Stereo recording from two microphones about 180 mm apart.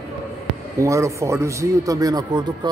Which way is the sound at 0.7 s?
15° right (ahead or behind).